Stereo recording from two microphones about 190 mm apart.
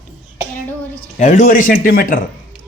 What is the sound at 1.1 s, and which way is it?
Speech, 40° left (ahead or behind).